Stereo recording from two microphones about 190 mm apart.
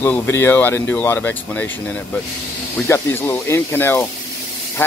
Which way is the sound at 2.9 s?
10° left (ahead or behind).